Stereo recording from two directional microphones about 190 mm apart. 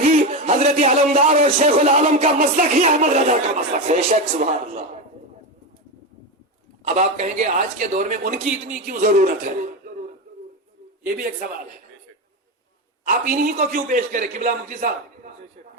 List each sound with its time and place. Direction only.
0.0 s a man's voice: 35° right (ahead or behind)
6.8 s a man's voice: 40° right (ahead or behind)
11.0 s a man's voice: 50° right (ahead or behind)
13.1 s a man's voice: 45° right (ahead or behind)